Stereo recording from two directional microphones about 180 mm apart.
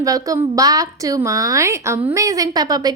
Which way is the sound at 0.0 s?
20° right (ahead or behind).